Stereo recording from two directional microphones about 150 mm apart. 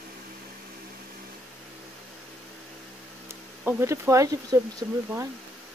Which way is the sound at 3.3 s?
15° right (ahead or behind).